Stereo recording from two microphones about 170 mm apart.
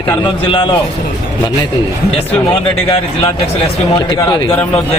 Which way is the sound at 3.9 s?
20° left (ahead or behind).